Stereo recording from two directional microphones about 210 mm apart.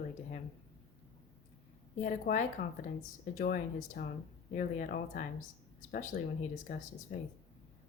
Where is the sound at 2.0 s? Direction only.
40° left (ahead or behind).